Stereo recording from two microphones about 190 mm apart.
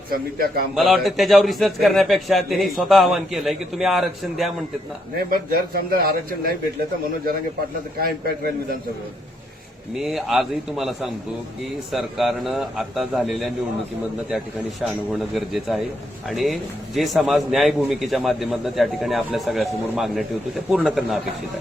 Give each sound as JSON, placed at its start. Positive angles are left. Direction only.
{"t": 0.1, "sound": "a man's voice", "side_deg": -55}
{"t": 0.8, "sound": "a man's voice", "side_deg": 0}
{"t": 5.3, "sound": "a man's voice", "side_deg": -50}
{"t": 9.9, "sound": "a man's voice", "side_deg": 0}